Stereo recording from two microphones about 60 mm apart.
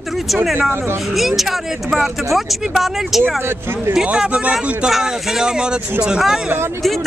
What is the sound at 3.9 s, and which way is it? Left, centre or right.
Speech, centre.